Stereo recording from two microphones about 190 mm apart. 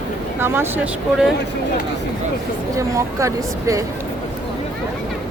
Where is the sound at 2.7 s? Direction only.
15° right (ahead or behind).